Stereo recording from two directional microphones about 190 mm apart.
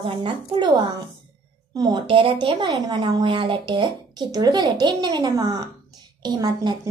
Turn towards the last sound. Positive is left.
turn(degrees=-20)  # may be behind; listen again after turning